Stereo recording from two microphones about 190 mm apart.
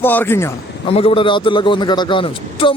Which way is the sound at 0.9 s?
30° left (ahead or behind).